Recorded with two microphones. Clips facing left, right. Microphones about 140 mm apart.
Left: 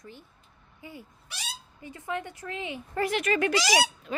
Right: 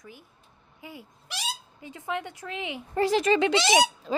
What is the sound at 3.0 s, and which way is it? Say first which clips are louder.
Speech: right 4 dB; 30° right (ahead or behind).